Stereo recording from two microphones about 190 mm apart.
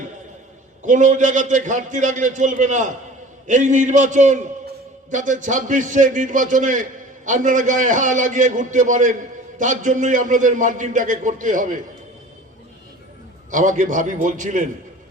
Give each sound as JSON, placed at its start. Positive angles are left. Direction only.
{"t": 0.8, "sound": "a man's voice", "side_deg": -40}
{"t": 13.5, "sound": "a man's voice", "side_deg": -40}